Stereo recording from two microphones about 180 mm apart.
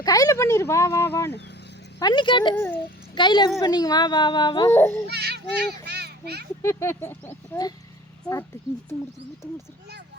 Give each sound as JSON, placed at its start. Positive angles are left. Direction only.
{"t": 0.0, "sound": "speech", "side_deg": 20}
{"t": 2.0, "sound": "speech", "side_deg": 25}
{"t": 2.6, "sound": "speech", "side_deg": 10}
{"t": 3.2, "sound": "speech", "side_deg": 25}
{"t": 4.7, "sound": "speech", "side_deg": 15}
{"t": 5.0, "sound": "a child's voice", "side_deg": -65}
{"t": 6.6, "sound": "speech", "side_deg": 15}